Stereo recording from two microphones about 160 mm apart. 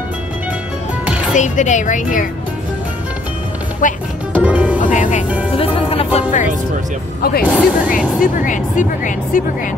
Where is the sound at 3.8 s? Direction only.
55° left (ahead or behind).